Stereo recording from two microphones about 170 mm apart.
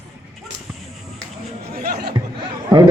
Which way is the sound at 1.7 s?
70° right (ahead or behind).